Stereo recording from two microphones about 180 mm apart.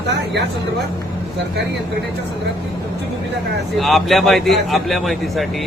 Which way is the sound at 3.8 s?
Centre (ahead or behind).